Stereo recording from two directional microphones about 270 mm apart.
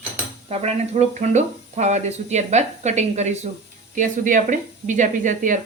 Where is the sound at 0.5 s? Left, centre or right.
Right.